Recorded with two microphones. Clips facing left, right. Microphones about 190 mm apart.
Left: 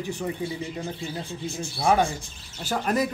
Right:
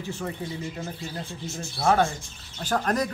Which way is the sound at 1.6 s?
15° left (ahead or behind).